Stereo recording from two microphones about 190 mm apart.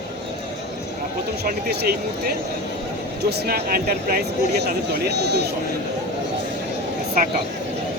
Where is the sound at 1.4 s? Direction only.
55° right (ahead or behind).